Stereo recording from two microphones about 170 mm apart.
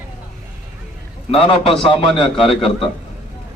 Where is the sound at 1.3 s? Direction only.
30° left (ahead or behind).